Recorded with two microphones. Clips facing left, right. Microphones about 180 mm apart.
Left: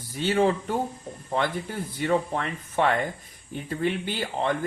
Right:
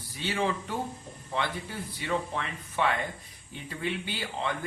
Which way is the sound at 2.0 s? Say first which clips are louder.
Left 7 dB; 50° left (ahead or behind).